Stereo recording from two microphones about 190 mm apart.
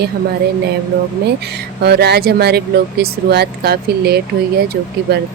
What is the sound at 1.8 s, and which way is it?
Speech, 60° right (ahead or behind).